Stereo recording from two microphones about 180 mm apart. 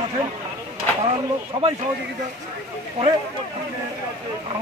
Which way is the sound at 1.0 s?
35° right (ahead or behind).